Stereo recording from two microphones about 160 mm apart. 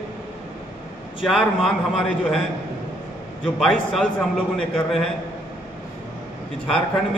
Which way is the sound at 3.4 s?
Centre (ahead or behind).